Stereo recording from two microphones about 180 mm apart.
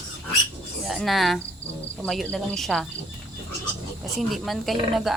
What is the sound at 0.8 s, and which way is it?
Speech, centre (ahead or behind).